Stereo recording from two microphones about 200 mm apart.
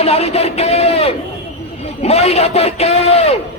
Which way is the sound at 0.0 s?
30° left (ahead or behind).